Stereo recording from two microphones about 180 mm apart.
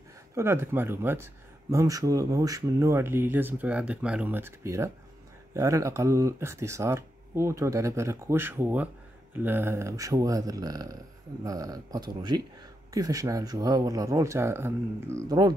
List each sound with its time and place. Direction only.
0.3 s speech: 15° right (ahead or behind)